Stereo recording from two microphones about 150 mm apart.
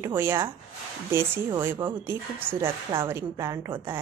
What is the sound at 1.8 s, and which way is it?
A woman's voice, 15° right (ahead or behind).